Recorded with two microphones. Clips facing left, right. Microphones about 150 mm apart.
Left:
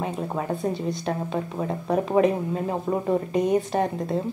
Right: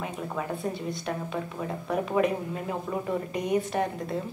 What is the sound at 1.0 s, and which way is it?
A woman's voice, 35° left (ahead or behind).